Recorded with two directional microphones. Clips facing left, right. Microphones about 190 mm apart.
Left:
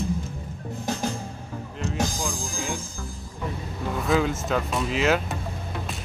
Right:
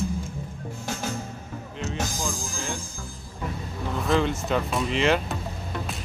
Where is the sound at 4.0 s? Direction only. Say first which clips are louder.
Even; centre (ahead or behind).